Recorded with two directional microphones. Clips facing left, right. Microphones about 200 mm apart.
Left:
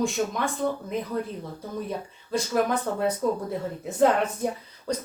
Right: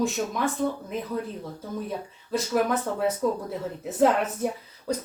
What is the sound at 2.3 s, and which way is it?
Speech, 5° right (ahead or behind).